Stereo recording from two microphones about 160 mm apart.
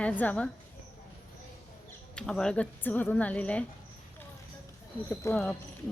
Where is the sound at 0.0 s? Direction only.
10° left (ahead or behind).